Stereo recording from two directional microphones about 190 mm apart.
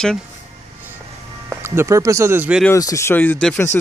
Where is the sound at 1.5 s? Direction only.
15° right (ahead or behind).